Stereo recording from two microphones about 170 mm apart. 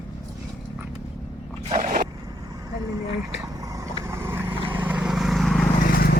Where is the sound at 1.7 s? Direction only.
45° right (ahead or behind).